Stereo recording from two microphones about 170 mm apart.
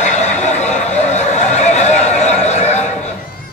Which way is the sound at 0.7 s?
40° left (ahead or behind).